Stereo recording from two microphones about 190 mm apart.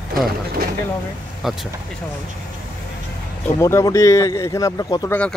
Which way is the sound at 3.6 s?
15° left (ahead or behind).